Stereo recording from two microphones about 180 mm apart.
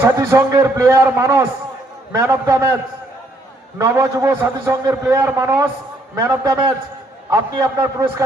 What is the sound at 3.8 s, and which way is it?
A man's voice, 15° right (ahead or behind).